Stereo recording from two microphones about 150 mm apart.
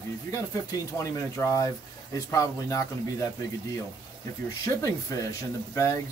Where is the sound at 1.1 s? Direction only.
20° left (ahead or behind).